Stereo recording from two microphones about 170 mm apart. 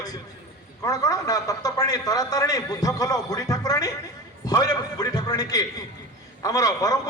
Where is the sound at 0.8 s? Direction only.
20° left (ahead or behind).